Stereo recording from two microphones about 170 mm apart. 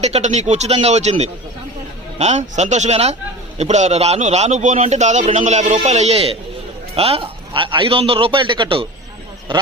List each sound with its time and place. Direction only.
0.0 s a man's voice: 40° right (ahead or behind)